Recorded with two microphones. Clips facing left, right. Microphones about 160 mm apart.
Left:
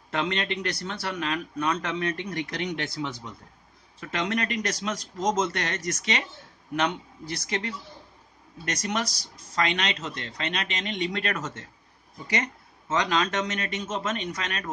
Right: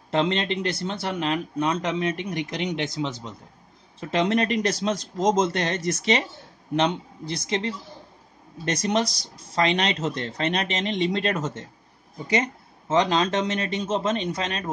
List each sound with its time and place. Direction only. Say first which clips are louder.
0.1 s speech: right 5 dB; 25° right (ahead or behind)